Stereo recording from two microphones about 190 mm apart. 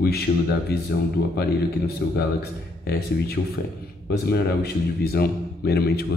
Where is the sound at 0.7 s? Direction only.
55° left (ahead or behind).